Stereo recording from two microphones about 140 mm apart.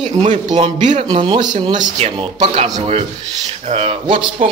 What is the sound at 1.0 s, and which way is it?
Speech, 35° right (ahead or behind).